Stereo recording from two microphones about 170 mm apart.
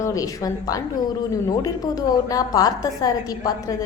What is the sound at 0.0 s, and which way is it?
A woman's voice, 20° left (ahead or behind).